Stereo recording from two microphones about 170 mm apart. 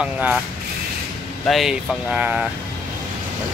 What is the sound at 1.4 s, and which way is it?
Speech, centre (ahead or behind).